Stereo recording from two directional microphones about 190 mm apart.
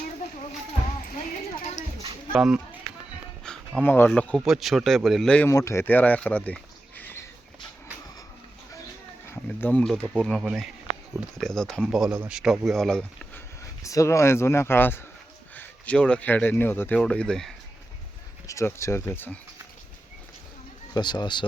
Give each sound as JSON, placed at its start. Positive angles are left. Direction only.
{"t": 2.3, "sound": "speech", "side_deg": -5}
{"t": 3.8, "sound": "speech", "side_deg": 10}
{"t": 9.3, "sound": "speech", "side_deg": 10}
{"t": 13.8, "sound": "speech", "side_deg": 15}
{"t": 18.4, "sound": "speech", "side_deg": 15}
{"t": 20.9, "sound": "speech", "side_deg": 20}